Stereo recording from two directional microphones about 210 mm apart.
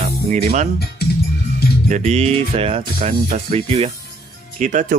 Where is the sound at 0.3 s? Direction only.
35° right (ahead or behind).